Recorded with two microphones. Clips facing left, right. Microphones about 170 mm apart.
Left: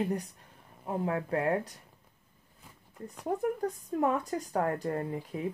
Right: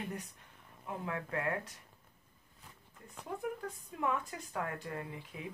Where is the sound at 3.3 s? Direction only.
40° left (ahead or behind).